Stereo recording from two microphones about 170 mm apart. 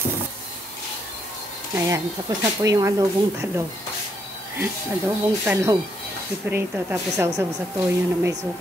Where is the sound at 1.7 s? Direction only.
20° right (ahead or behind).